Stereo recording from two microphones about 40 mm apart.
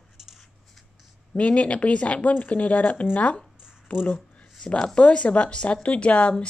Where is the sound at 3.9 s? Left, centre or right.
Left.